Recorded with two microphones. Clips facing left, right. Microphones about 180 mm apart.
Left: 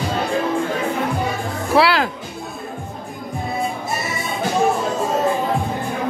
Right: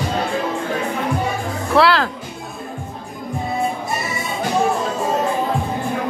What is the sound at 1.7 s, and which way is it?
Music, 10° left (ahead or behind).